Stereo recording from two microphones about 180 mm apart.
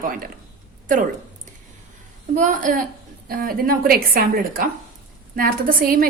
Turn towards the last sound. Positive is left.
turn(degrees=-55)  # may be behind; listen again after turning